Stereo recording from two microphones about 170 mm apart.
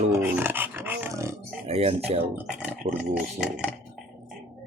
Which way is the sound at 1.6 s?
35° right (ahead or behind).